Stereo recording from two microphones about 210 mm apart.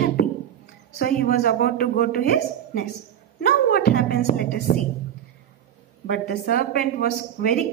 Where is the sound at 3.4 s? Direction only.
45° left (ahead or behind).